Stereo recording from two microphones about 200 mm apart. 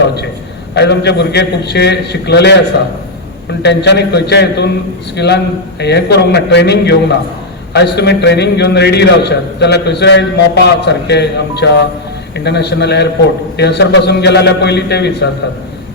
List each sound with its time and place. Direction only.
0.7 s a man's voice: 55° left (ahead or behind)
3.6 s a man's voice: 60° left (ahead or behind)